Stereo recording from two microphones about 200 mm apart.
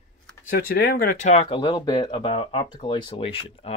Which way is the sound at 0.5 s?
45° left (ahead or behind).